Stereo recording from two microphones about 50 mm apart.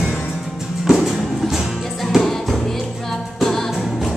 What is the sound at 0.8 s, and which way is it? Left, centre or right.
Music, centre.